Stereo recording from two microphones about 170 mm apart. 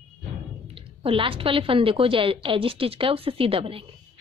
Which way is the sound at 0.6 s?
35° right (ahead or behind).